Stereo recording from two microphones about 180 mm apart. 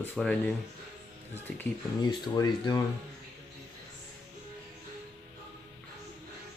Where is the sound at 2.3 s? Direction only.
20° left (ahead or behind).